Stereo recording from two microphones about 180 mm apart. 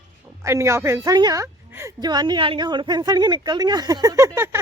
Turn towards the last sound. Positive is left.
turn(degrees=-15)  # may be behind; listen again after turning